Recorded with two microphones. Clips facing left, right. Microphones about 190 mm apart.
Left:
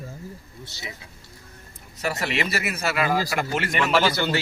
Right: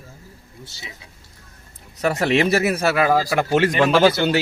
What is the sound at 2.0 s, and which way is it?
Speech, 55° right (ahead or behind).